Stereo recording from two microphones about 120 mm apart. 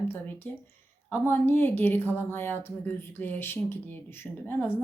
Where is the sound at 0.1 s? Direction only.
15° left (ahead or behind).